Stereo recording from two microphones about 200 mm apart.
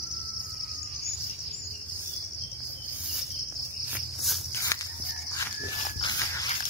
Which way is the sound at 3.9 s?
Centre (ahead or behind).